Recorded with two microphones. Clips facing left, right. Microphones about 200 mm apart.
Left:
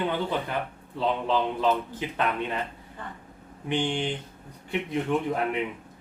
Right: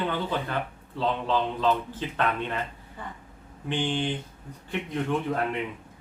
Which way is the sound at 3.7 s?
15° left (ahead or behind).